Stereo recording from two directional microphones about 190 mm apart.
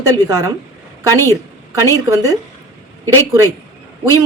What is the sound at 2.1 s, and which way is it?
Speech, 20° right (ahead or behind).